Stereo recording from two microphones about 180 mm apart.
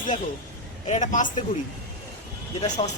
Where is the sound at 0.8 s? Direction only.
40° left (ahead or behind).